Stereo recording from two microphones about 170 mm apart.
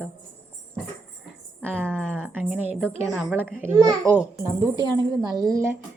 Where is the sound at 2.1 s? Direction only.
10° right (ahead or behind).